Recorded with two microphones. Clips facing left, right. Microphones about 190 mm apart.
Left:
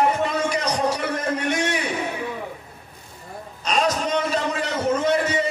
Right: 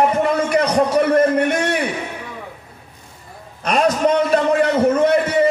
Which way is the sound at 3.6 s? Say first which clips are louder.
Right 6 dB; 60° right (ahead or behind).